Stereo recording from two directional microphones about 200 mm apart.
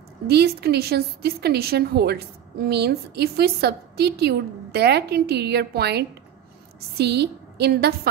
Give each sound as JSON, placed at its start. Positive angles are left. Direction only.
{"t": 0.3, "sound": "a woman's voice", "side_deg": -55}